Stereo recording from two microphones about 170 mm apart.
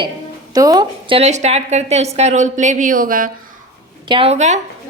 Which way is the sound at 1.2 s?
40° right (ahead or behind).